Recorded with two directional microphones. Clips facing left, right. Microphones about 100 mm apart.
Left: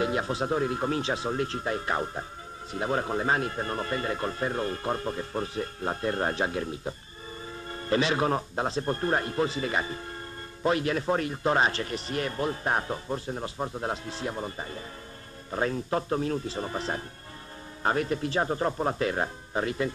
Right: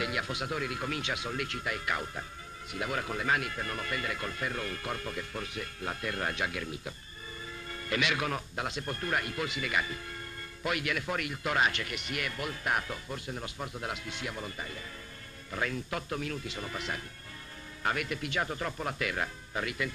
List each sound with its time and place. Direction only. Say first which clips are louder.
0.0 s speech: left 7 dB; 35° left (ahead or behind)